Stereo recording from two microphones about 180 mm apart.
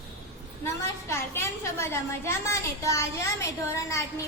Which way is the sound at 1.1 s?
15° left (ahead or behind).